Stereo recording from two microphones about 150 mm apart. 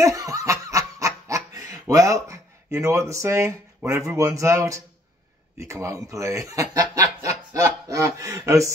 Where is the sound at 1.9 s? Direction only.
20° right (ahead or behind).